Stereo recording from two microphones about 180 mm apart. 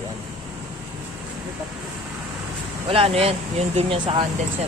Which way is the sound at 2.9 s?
35° right (ahead or behind).